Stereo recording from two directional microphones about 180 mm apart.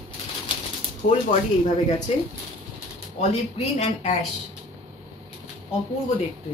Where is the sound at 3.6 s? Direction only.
35° left (ahead or behind).